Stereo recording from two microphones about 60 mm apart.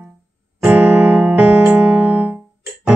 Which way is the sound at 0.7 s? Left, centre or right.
Right.